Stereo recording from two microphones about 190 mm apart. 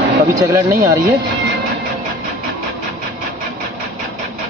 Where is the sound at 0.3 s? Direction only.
15° right (ahead or behind).